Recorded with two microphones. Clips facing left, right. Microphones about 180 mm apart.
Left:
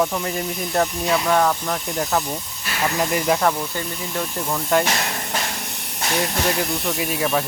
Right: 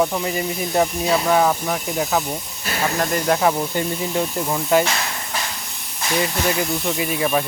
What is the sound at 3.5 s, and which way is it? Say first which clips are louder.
Speech: right 5 dB; 20° right (ahead or behind).